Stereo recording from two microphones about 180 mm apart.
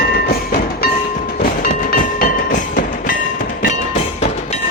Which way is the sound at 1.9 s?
50° left (ahead or behind).